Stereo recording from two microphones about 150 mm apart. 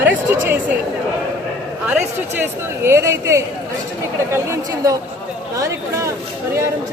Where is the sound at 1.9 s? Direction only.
10° right (ahead or behind).